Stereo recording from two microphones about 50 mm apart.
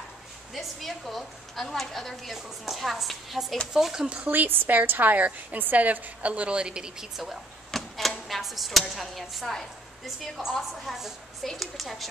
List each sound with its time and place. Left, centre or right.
0.6 s a woman's voice: centre
4.3 s a woman's voice: right; by 7.3 s centre
7.7 s typewriter: centre
8.3 s a woman's voice: centre